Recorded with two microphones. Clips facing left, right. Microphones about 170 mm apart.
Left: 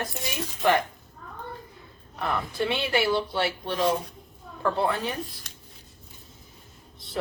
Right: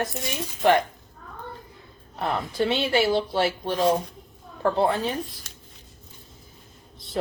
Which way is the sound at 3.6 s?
45° right (ahead or behind).